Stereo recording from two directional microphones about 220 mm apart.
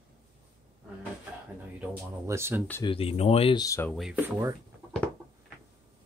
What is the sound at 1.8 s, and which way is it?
Speech, 10° right (ahead or behind).